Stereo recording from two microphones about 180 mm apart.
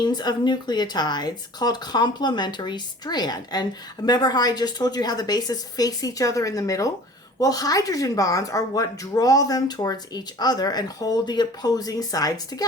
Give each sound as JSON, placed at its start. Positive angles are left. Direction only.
{"t": 0.0, "sound": "speech", "side_deg": 25}